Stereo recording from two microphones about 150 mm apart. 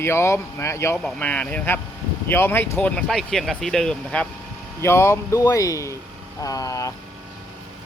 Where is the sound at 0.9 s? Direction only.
5° left (ahead or behind).